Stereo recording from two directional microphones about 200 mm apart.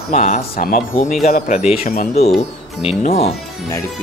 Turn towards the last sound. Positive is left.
turn(degrees=30)  # may be behind; listen again after turning